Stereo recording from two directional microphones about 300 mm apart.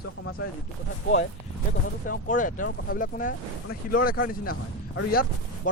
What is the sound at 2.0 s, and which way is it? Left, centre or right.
Speech, left.